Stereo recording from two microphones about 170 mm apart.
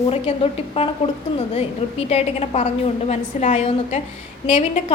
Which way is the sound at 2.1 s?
40° left (ahead or behind).